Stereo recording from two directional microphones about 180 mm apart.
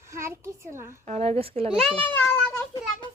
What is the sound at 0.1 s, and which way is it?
Speech, 15° right (ahead or behind).